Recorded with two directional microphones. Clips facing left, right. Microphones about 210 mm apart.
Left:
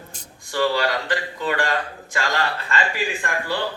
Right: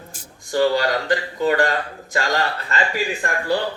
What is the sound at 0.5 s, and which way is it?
A man's voice, 35° right (ahead or behind).